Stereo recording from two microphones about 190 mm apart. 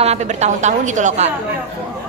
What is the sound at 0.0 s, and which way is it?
A woman's voice, 35° right (ahead or behind).